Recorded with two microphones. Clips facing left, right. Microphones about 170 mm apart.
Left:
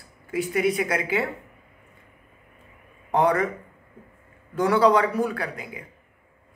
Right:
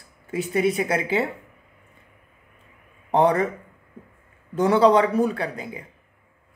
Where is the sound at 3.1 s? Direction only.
25° right (ahead or behind).